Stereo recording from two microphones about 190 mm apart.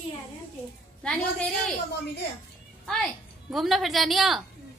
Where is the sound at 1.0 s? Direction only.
Centre (ahead or behind).